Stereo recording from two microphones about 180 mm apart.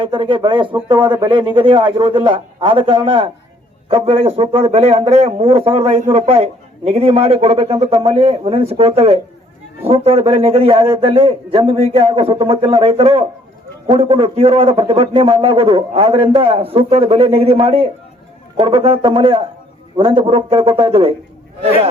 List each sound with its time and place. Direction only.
0.0 s a man's voice: 30° right (ahead or behind)